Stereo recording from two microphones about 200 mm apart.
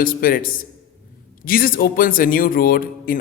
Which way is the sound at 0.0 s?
45° left (ahead or behind).